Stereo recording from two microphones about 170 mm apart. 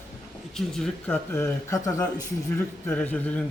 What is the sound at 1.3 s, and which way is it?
Speech, 15° left (ahead or behind).